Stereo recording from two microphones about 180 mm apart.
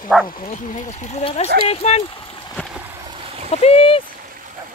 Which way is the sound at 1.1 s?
35° left (ahead or behind).